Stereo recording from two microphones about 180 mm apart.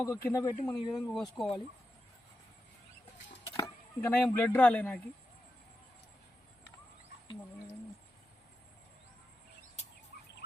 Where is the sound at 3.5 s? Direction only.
15° left (ahead or behind).